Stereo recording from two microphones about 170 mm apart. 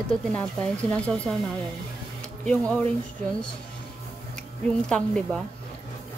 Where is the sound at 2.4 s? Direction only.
5° left (ahead or behind).